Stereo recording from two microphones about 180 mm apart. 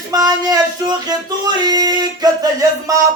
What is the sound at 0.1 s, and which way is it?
Music, 20° right (ahead or behind).